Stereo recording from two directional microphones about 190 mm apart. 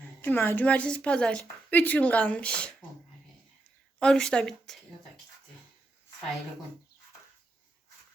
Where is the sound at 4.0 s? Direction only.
5° left (ahead or behind).